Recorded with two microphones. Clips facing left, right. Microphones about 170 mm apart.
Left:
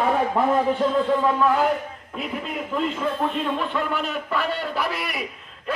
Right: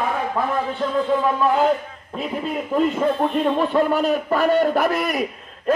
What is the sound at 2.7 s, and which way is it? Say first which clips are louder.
A man's voice: right 6 dB; 40° right (ahead or behind).